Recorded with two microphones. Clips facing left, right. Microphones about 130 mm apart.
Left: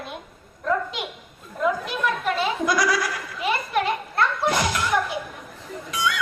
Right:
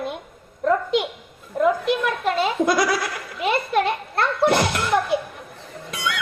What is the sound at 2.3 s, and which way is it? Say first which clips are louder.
Speech: right 3 dB; 55° right (ahead or behind).